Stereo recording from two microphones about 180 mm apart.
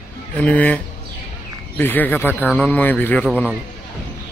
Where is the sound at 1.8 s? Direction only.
10° left (ahead or behind).